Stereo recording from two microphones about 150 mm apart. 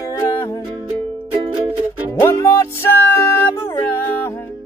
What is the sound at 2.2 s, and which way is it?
Music, 15° left (ahead or behind).